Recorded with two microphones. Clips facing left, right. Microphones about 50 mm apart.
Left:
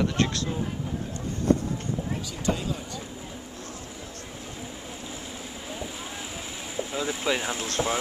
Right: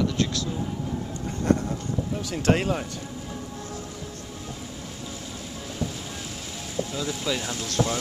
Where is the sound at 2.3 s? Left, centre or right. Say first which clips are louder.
Right 7 dB; right.